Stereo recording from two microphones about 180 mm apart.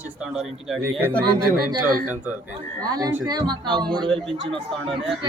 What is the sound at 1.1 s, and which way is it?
Speech, 55° right (ahead or behind).